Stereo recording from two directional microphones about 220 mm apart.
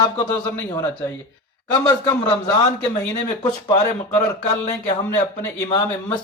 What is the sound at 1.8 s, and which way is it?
Speech, 15° left (ahead or behind).